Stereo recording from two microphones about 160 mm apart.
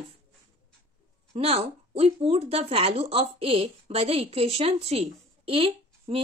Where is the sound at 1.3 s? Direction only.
40° right (ahead or behind).